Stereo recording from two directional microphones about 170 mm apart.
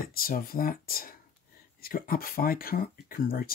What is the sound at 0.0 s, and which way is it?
Speech, 60° left (ahead or behind).